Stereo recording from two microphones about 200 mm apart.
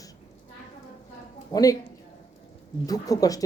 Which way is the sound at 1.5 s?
15° left (ahead or behind).